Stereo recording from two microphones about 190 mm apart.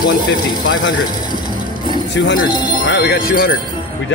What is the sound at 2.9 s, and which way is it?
Speech, 55° left (ahead or behind).